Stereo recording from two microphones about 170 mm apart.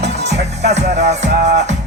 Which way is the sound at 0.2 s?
80° right.